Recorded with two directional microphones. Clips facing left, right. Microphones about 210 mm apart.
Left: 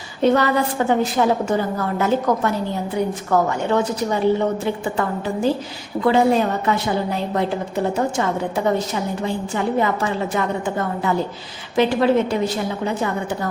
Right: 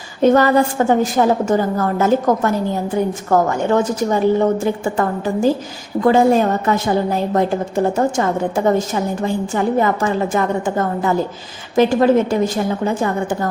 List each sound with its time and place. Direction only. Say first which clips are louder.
0.2 s a woman's voice: right 4 dB; 45° right (ahead or behind)
9.2 s a woman's voice: right 4 dB; 45° right (ahead or behind)